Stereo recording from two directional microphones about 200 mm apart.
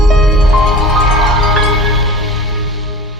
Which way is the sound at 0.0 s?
Centre (ahead or behind).